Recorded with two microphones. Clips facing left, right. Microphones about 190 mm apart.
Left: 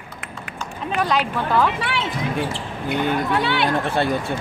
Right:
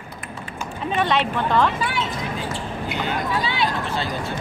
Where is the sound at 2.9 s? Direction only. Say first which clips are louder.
Left 5 dB; 55° left (ahead or behind).